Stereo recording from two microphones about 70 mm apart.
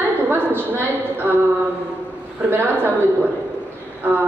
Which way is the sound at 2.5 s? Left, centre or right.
Right.